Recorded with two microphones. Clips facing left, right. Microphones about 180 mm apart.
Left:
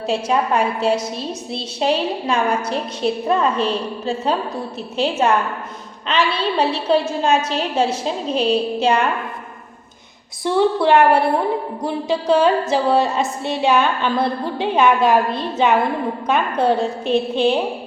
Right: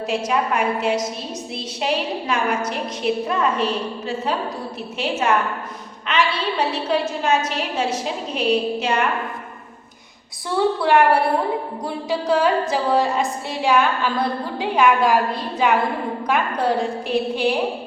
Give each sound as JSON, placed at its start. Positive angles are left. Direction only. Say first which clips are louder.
{"t": 0.1, "sound": "a woman's voice", "louder": "left 3 dB", "side_deg": 30}
{"t": 10.4, "sound": "a woman's voice", "louder": "left 4 dB", "side_deg": 20}